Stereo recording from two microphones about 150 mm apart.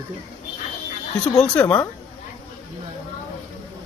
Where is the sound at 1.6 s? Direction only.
10° left (ahead or behind).